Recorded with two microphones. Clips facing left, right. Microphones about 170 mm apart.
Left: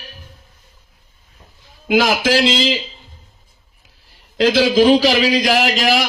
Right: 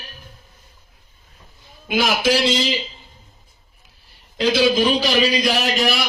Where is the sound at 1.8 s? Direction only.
90° left.